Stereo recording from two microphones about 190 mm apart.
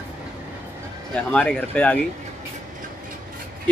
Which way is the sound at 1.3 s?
5° left (ahead or behind).